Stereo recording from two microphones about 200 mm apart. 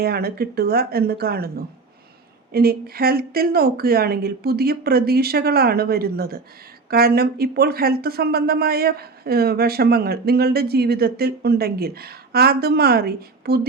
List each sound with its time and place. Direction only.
0.0 s speech: 50° right (ahead or behind)